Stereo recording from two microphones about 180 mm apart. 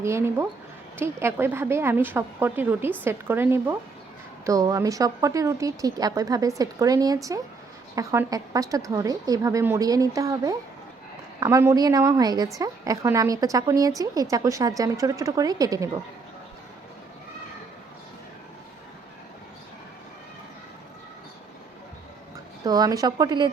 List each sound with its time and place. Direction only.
0.0 s a woman's voice: 15° right (ahead or behind)
22.6 s a woman's voice: 20° right (ahead or behind)